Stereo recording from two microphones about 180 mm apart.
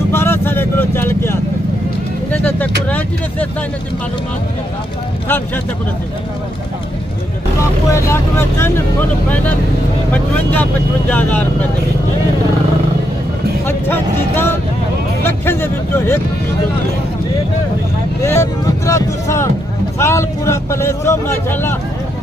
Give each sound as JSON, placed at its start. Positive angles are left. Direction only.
{"t": 0.1, "sound": "vehicle", "side_deg": 10}
{"t": 2.3, "sound": "speech", "side_deg": 10}
{"t": 7.9, "sound": "speech", "side_deg": 15}
{"t": 10.1, "sound": "speech", "side_deg": 10}
{"t": 13.7, "sound": "speech", "side_deg": 10}
{"t": 18.2, "sound": "speech", "side_deg": 15}